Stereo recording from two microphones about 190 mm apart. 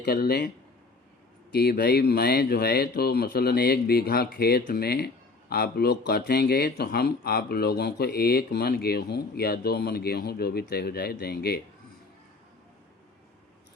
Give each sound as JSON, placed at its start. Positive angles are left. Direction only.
{"t": 0.0, "sound": "speech", "side_deg": 55}
{"t": 1.5, "sound": "speech", "side_deg": 55}